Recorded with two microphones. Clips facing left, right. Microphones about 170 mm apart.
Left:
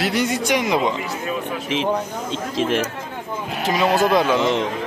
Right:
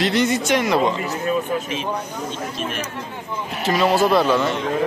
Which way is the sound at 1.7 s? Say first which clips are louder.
Left 4 dB; 90° left.